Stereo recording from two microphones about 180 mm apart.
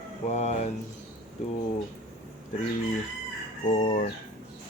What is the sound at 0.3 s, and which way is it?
Speech, 40° left (ahead or behind).